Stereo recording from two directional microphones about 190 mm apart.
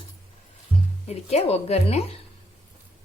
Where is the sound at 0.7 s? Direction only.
10° right (ahead or behind).